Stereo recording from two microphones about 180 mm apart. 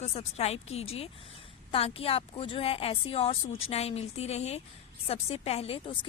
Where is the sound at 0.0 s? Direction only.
35° left (ahead or behind).